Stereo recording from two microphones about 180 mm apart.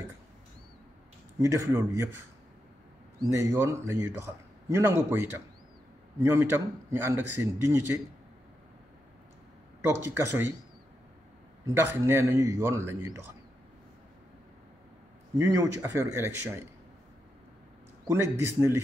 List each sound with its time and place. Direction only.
1.4 s a man's voice: 15° right (ahead or behind)
3.2 s a man's voice: 15° right (ahead or behind)
9.8 s a man's voice: 10° right (ahead or behind)
11.6 s a man's voice: 15° right (ahead or behind)
15.3 s a man's voice: 15° right (ahead or behind)
18.1 s a man's voice: 15° right (ahead or behind)